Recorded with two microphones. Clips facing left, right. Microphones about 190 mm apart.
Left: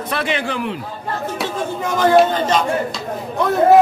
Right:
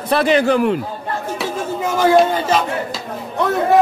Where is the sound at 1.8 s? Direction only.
10° right (ahead or behind).